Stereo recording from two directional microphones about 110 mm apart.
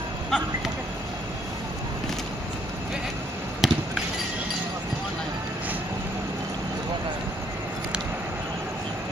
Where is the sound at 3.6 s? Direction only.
5° right (ahead or behind).